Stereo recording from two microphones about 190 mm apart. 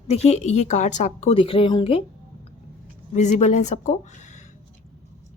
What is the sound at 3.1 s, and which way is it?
Speech, 40° left (ahead or behind).